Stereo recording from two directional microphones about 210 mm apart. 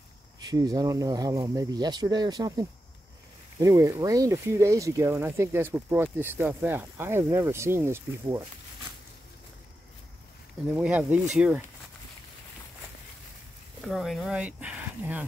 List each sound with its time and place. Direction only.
0.5 s speech: 15° right (ahead or behind)
10.7 s speech: 5° right (ahead or behind)
13.7 s speech: centre (ahead or behind)